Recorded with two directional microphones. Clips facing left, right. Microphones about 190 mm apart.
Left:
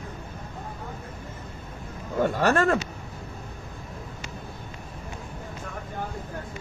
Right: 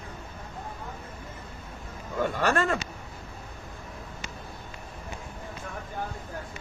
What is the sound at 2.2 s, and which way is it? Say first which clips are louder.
Speech: left 4 dB; 45° left (ahead or behind).